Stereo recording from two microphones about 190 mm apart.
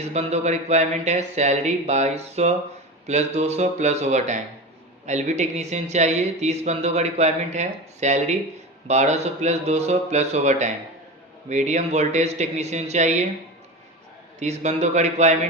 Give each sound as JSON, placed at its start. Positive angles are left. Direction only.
{"t": 0.0, "sound": "speech", "side_deg": -35}
{"t": 14.3, "sound": "speech", "side_deg": -35}